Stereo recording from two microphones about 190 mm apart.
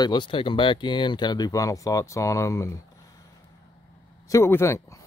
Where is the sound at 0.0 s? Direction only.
25° left (ahead or behind).